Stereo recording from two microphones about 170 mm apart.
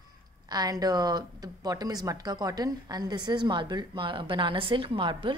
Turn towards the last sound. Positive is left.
turn(degrees=-30)  # may be behind; listen again after turning